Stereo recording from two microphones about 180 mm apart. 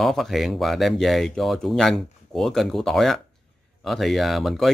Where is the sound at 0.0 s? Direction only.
Centre (ahead or behind).